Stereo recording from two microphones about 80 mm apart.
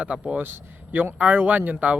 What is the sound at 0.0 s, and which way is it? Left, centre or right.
Speech, centre.